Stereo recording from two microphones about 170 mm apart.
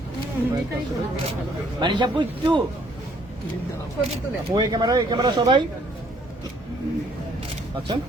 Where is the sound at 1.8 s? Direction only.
25° right (ahead or behind).